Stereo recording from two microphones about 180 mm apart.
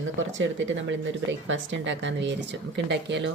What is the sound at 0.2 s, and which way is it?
Speech, 90° right.